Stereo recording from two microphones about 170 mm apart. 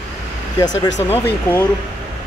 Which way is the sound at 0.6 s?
25° left (ahead or behind).